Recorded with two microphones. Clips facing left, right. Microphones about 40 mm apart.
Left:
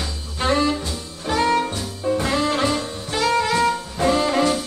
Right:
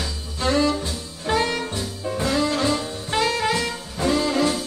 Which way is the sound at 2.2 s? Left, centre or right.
Left.